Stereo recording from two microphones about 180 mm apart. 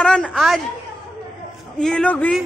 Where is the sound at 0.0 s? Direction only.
5° left (ahead or behind).